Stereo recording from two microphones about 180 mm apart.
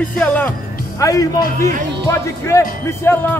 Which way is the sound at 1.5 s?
45° right (ahead or behind).